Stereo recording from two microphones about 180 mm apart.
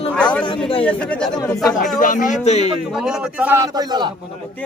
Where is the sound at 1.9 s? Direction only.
50° left (ahead or behind).